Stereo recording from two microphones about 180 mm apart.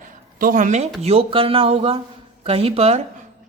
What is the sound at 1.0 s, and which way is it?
Speech, 30° right (ahead or behind).